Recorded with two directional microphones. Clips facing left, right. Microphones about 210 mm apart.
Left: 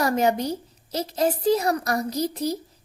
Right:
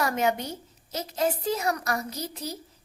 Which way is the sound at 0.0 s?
35° left (ahead or behind).